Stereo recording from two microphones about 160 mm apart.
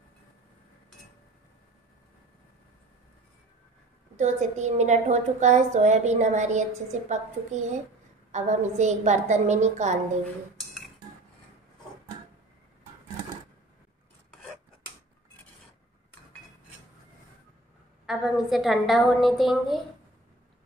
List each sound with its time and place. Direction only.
4.2 s a woman's voice: 45° right (ahead or behind)
18.0 s a woman's voice: centre (ahead or behind)